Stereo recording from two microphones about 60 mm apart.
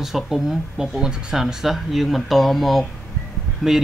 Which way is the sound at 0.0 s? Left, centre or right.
Centre.